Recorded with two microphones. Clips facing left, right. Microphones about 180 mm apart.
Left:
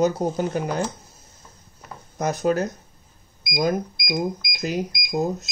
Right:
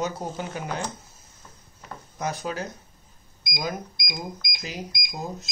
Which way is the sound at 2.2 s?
45° left (ahead or behind).